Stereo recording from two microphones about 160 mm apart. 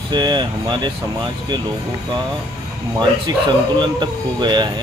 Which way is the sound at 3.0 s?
30° right (ahead or behind).